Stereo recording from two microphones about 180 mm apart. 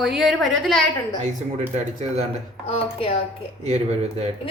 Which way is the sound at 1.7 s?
40° right (ahead or behind).